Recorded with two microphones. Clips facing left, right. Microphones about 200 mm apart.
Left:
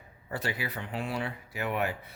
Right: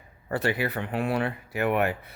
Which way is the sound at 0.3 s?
60° right (ahead or behind).